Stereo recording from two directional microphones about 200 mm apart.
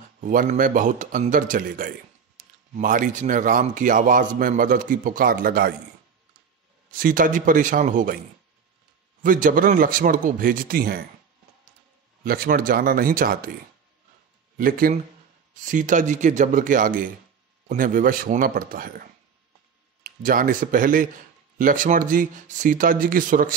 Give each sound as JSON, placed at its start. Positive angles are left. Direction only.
{"t": 0.2, "sound": "a man's voice", "side_deg": -40}
{"t": 6.9, "sound": "a man's voice", "side_deg": -45}
{"t": 9.2, "sound": "a man's voice", "side_deg": -45}
{"t": 12.2, "sound": "a man's voice", "side_deg": -45}
{"t": 14.6, "sound": "a man's voice", "side_deg": -45}